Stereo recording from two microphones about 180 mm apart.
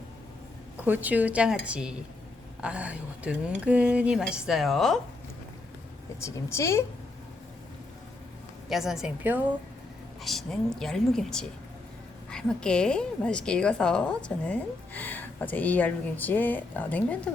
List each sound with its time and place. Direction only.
0.9 s a woman's voice: 10° right (ahead or behind)
6.1 s a woman's voice: 15° left (ahead or behind)
8.7 s a woman's voice: centre (ahead or behind)